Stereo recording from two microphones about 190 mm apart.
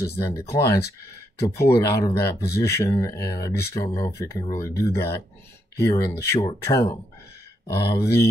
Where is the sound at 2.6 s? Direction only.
15° left (ahead or behind).